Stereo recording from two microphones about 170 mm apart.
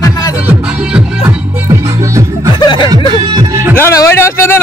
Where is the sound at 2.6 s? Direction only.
30° left (ahead or behind).